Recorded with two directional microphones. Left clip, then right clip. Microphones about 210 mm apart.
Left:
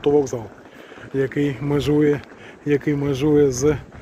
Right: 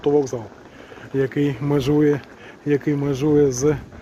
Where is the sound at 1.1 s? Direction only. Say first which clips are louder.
Even; 10° right (ahead or behind).